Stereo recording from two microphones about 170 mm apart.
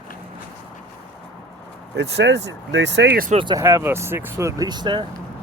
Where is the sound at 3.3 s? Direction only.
30° right (ahead or behind).